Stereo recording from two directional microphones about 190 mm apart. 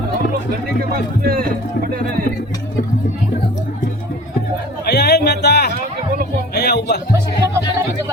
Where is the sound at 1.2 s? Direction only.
50° right (ahead or behind).